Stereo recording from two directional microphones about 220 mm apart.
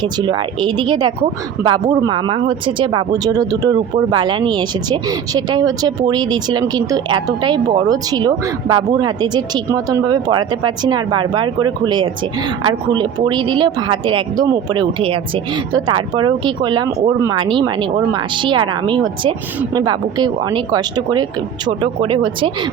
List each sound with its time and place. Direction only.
0.0 s speech: 20° right (ahead or behind)